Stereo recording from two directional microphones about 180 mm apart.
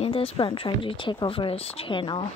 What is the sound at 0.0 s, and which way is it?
Speech, 30° left (ahead or behind).